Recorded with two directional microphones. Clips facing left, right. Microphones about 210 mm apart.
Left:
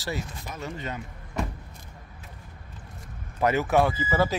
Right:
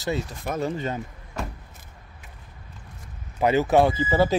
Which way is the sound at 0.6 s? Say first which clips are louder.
Right 7 dB; 35° right (ahead or behind).